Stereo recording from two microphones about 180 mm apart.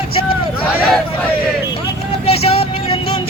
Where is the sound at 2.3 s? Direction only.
35° left (ahead or behind).